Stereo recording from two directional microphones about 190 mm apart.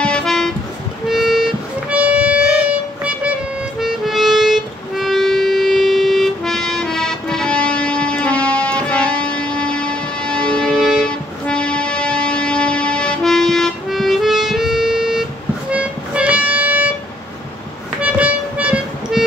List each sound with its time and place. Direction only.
0.0 s music: 5° left (ahead or behind)
15.7 s a sound: 5° right (ahead or behind)
18.0 s music: 10° right (ahead or behind)